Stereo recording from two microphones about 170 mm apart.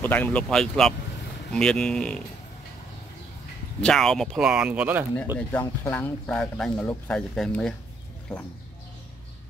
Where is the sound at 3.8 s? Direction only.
5° left (ahead or behind).